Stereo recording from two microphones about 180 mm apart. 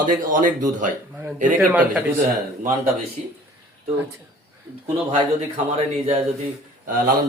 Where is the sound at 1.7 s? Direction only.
10° right (ahead or behind).